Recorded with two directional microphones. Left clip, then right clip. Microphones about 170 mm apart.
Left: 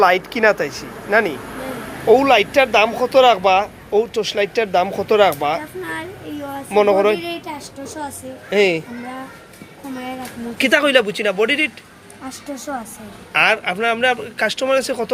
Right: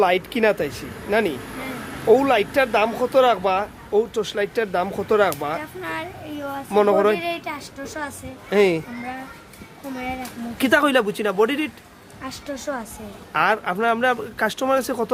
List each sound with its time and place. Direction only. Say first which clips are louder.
0.0 s speech: left 4 dB; 30° right (ahead or behind)
2.0 s speech: left 4 dB; 20° right (ahead or behind)
6.7 s speech: left 3 dB; 30° right (ahead or behind)
7.1 s a sound: left 2 dB; 20° right (ahead or behind)
8.4 s speech: left 2 dB; 30° right (ahead or behind)
10.6 s speech: left 3 dB; 30° right (ahead or behind)
13.3 s speech: left 4 dB; 35° right (ahead or behind)